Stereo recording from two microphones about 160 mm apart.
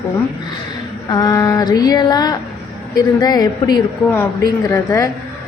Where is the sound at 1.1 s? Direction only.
25° left (ahead or behind).